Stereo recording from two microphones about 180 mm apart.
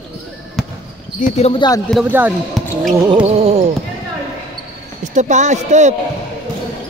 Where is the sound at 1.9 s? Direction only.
5° right (ahead or behind).